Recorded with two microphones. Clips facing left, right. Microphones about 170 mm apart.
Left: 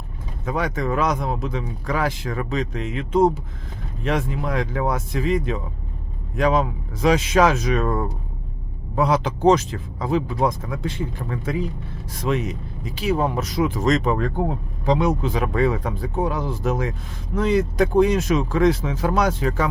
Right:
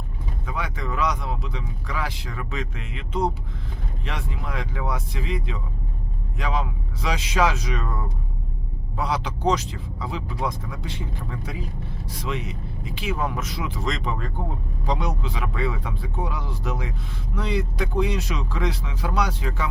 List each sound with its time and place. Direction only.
0.4 s speech: 45° left (ahead or behind)